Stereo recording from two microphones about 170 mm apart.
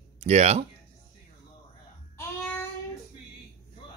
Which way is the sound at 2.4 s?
10° left (ahead or behind).